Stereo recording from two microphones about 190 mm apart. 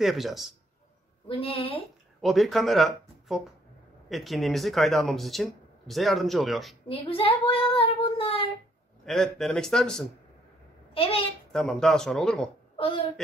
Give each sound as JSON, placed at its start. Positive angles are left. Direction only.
{"t": 0.0, "sound": "speech", "side_deg": 0}
{"t": 1.2, "sound": "a woman's voice", "side_deg": 30}
{"t": 2.2, "sound": "speech", "side_deg": 0}
{"t": 6.9, "sound": "child singing", "side_deg": 30}
{"t": 9.0, "sound": "speech", "side_deg": 0}
{"t": 11.0, "sound": "a woman's voice", "side_deg": 30}
{"t": 11.5, "sound": "speech", "side_deg": 0}
{"t": 12.7, "sound": "a woman's voice", "side_deg": 30}